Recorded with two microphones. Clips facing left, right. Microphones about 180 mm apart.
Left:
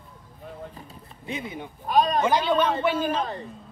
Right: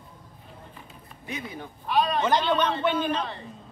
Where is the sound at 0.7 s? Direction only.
40° left (ahead or behind).